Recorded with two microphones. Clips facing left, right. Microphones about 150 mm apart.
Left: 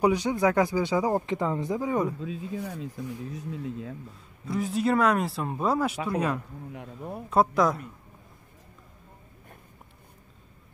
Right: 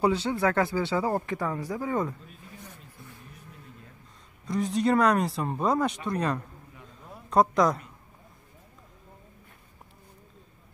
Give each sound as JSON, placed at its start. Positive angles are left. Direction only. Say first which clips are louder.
{"t": 0.0, "sound": "speech", "louder": "left 2 dB", "side_deg": 15}
{"t": 2.1, "sound": "speech", "louder": "left 15 dB", "side_deg": 90}
{"t": 4.5, "sound": "speech", "louder": "right 1 dB", "side_deg": 5}
{"t": 6.7, "sound": "speech", "louder": "left 10 dB", "side_deg": 70}
{"t": 7.2, "sound": "speech", "louder": "right 1 dB", "side_deg": 5}